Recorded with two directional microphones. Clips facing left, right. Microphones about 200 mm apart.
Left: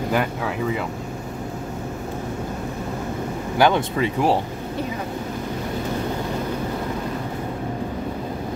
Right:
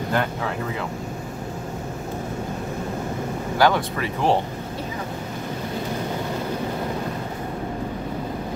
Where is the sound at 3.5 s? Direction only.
20° left (ahead or behind).